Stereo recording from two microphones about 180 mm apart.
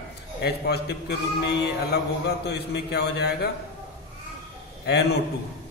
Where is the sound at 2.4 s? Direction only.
70° left (ahead or behind).